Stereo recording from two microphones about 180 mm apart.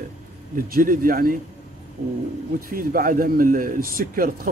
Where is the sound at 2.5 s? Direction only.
50° right (ahead or behind).